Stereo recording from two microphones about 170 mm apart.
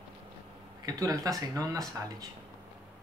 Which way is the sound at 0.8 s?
20° right (ahead or behind).